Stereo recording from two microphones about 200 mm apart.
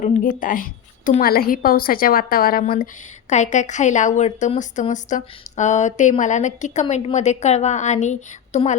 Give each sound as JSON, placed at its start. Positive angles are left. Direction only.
{"t": 0.0, "sound": "a woman's voice", "side_deg": 40}